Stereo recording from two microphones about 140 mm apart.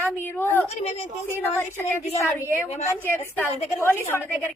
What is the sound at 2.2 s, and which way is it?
A woman's voice, 20° left (ahead or behind).